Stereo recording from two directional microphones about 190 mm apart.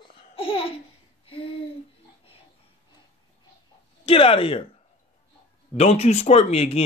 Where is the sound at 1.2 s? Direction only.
30° left (ahead or behind).